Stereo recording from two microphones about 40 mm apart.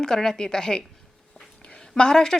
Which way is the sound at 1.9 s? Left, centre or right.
Centre.